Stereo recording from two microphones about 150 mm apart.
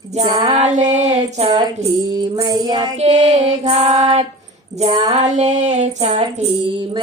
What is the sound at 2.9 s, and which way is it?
Speech, 45° right (ahead or behind).